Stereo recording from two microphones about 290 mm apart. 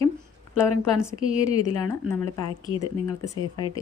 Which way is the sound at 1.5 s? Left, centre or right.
Left.